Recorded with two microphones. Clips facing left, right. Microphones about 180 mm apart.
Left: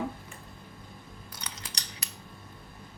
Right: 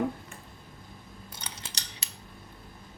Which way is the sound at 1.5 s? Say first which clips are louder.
Left 1 dB; 30° right (ahead or behind).